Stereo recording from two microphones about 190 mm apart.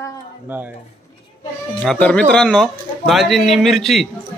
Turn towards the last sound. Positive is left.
turn(degrees=0)  # may be behind; listen again after turning